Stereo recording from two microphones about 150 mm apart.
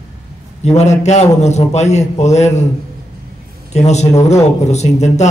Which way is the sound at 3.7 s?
50° left (ahead or behind).